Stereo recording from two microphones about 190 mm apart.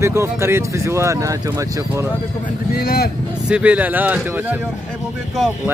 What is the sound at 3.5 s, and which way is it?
Speech, 5° right (ahead or behind).